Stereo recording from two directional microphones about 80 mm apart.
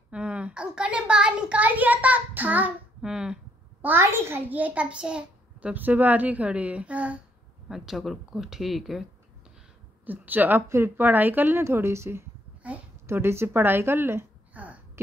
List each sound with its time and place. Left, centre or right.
0.1 s a child's voice: centre
3.0 s speech: centre
3.8 s speech: right
4.5 s a child's voice: centre
7.6 s speech: centre
10.0 s speech: right
14.5 s a sound: centre